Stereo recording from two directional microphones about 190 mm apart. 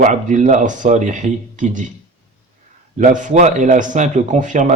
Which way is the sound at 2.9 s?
40° right (ahead or behind).